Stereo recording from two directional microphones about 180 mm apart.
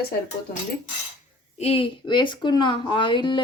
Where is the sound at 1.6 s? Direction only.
35° left (ahead or behind).